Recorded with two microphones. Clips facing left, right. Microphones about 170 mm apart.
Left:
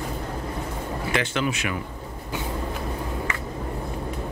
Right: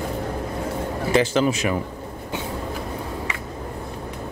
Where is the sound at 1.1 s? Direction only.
35° right (ahead or behind).